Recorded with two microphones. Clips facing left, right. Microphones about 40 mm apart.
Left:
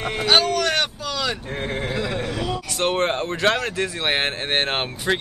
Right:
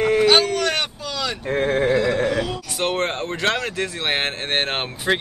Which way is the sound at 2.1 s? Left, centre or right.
Right.